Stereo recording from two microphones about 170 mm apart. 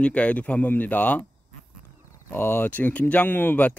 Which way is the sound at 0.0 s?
10° left (ahead or behind).